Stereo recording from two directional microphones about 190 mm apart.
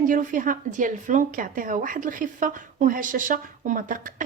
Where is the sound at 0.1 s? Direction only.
45° right (ahead or behind).